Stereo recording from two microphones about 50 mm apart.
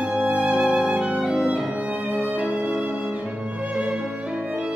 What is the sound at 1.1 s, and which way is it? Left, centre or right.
Violin, right.